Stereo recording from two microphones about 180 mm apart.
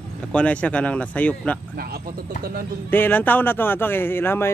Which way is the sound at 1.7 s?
60° right (ahead or behind).